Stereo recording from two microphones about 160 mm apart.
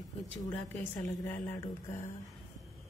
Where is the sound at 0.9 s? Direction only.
15° left (ahead or behind).